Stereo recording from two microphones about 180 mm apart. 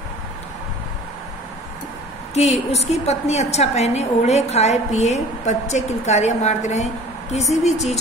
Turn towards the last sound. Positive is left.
turn(degrees=40)  # may be behind; listen again after turning